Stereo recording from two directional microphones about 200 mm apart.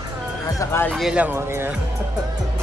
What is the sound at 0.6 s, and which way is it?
Speech, 10° left (ahead or behind).